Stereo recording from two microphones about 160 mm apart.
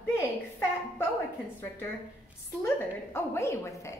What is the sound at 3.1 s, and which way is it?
Speech, 15° left (ahead or behind).